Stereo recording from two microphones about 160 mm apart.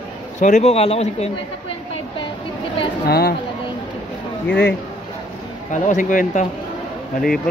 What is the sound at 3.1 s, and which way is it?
Speech, 75° left (ahead or behind).